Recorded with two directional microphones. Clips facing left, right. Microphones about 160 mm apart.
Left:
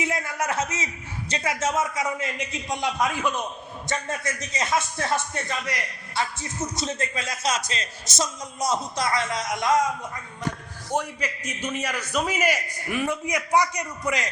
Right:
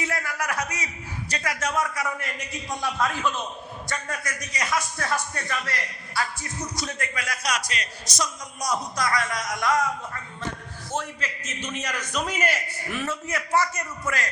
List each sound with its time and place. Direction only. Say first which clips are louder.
0.0 s a man's voice: left 2 dB; 20° left (ahead or behind)
10.9 s a man's voice: left 4 dB; 15° left (ahead or behind)